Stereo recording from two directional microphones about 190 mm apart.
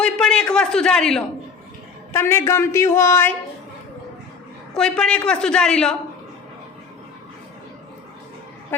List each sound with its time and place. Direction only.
0.0 s a man's voice: 5° left (ahead or behind)
4.7 s a woman's voice: 5° left (ahead or behind)